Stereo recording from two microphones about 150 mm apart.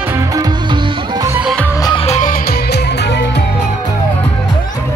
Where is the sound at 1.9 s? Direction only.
40° left (ahead or behind).